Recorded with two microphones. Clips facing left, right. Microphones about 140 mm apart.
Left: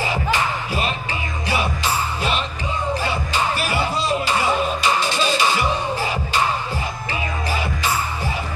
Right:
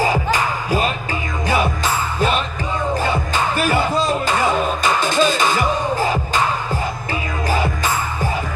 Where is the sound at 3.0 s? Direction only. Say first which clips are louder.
Right 3 dB; 50° right (ahead or behind).